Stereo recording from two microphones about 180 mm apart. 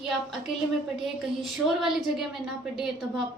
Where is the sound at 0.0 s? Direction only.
Centre (ahead or behind).